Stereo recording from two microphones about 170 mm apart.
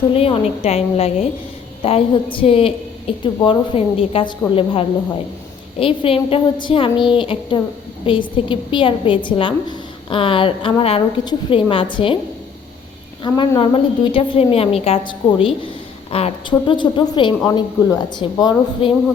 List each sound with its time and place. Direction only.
0.1 s a woman's voice: 35° left (ahead or behind)
13.2 s a woman's voice: 25° left (ahead or behind)